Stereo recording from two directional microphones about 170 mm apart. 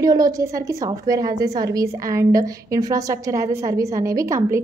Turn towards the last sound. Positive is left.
turn(degrees=-20)  # may be behind; listen again after turning